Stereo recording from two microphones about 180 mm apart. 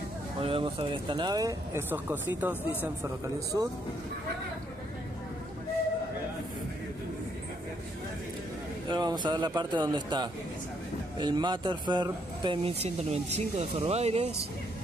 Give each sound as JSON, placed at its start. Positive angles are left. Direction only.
{"t": 0.4, "sound": "a woman's voice", "side_deg": -30}
{"t": 8.8, "sound": "speech", "side_deg": -25}